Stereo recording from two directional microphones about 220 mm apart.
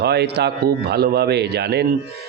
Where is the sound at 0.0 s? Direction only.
50° right (ahead or behind).